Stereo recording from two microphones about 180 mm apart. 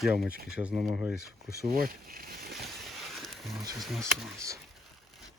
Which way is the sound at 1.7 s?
55° right (ahead or behind).